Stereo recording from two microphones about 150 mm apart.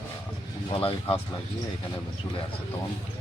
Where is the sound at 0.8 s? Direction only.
40° left (ahead or behind).